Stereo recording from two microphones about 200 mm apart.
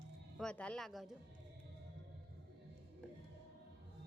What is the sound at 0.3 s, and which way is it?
Speech, 5° left (ahead or behind).